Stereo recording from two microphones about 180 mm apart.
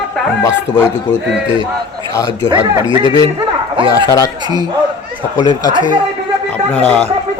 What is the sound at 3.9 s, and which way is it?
Speech, 20° left (ahead or behind).